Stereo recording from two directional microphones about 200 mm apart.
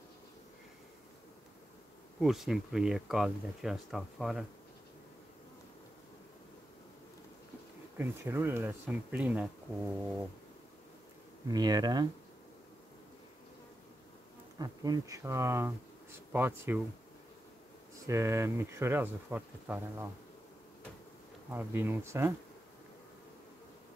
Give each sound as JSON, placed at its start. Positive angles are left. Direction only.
{"t": 2.1, "sound": "speech", "side_deg": 0}
{"t": 8.0, "sound": "speech", "side_deg": -10}
{"t": 11.4, "sound": "speech", "side_deg": -20}
{"t": 14.6, "sound": "speech", "side_deg": -20}
{"t": 18.0, "sound": "speech", "side_deg": -15}
{"t": 21.5, "sound": "speech", "side_deg": -10}